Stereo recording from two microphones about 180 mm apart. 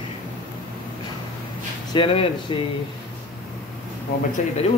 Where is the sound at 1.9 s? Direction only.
30° left (ahead or behind).